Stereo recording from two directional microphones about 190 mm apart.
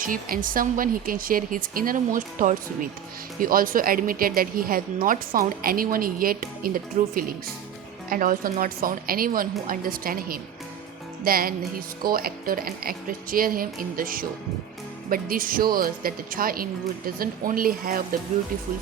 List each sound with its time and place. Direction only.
0.0 s speech: 45° right (ahead or behind)